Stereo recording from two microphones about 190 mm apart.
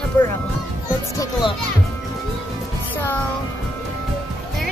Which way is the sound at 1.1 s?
15° left (ahead or behind).